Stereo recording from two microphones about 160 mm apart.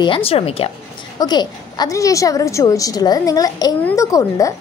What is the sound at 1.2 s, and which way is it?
A woman's voice, 25° left (ahead or behind).